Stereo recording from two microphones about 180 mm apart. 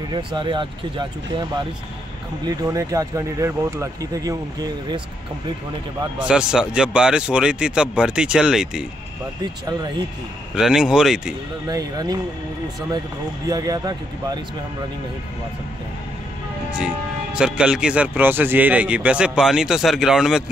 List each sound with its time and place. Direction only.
0.1 s speech: 25° right (ahead or behind)
6.1 s speech: 5° right (ahead or behind)
9.4 s speech: 20° right (ahead or behind)
10.5 s speech: 5° right (ahead or behind)
11.6 s speech: 20° right (ahead or behind)
13.5 s speech: 20° right (ahead or behind)
16.7 s speech: 5° right (ahead or behind)